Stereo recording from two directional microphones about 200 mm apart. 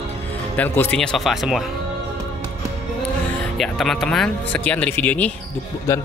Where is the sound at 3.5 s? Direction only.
Centre (ahead or behind).